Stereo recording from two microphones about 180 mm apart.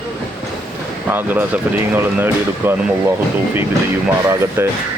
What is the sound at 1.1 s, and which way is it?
Speech, 10° right (ahead or behind).